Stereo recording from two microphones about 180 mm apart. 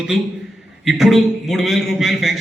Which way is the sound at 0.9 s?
Centre (ahead or behind).